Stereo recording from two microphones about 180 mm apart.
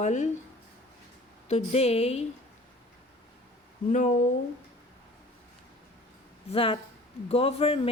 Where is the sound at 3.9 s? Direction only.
45° left (ahead or behind).